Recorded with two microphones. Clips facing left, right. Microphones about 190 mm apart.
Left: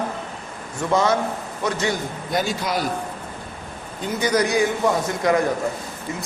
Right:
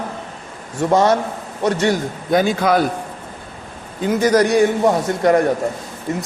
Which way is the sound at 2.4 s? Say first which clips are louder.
Right 8 dB; 55° right (ahead or behind).